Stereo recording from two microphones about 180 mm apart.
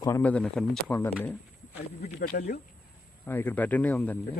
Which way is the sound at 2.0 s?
50° left (ahead or behind).